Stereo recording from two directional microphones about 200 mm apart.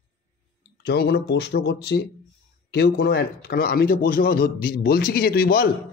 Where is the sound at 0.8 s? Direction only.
55° left (ahead or behind).